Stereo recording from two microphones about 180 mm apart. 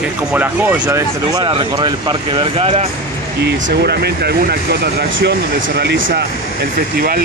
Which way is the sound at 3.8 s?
65° right (ahead or behind).